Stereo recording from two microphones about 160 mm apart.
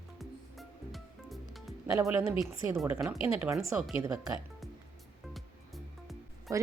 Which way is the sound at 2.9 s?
Centre (ahead or behind).